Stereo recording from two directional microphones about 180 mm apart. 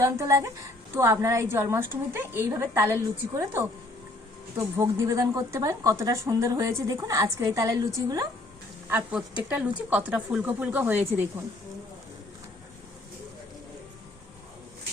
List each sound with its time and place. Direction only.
0.0 s a woman's voice: 15° right (ahead or behind)
8.9 s a woman's voice: 10° right (ahead or behind)